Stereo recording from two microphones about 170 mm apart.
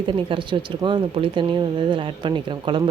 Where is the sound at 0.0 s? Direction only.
30° right (ahead or behind).